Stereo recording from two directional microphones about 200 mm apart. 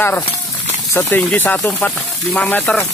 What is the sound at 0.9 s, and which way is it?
Speech, 10° left (ahead or behind).